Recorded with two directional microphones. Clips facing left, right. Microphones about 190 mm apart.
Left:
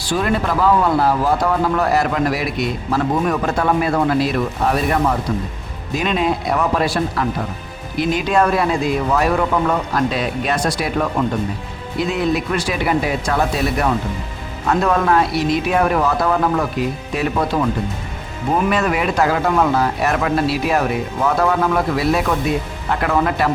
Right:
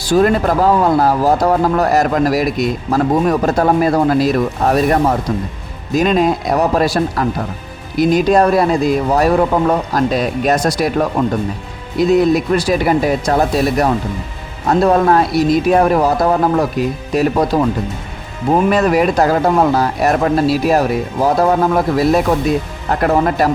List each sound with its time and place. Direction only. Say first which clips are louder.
0.0 s speech: right 7 dB; 40° right (ahead or behind)